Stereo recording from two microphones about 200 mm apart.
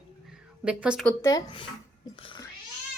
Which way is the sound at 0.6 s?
5° right (ahead or behind).